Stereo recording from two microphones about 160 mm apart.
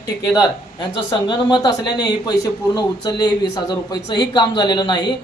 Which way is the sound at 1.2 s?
30° left (ahead or behind).